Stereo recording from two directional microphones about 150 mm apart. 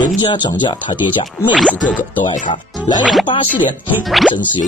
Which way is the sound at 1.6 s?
10° left (ahead or behind).